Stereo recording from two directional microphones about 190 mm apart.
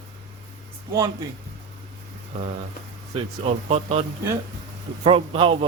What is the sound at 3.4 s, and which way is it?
Speech, 30° right (ahead or behind).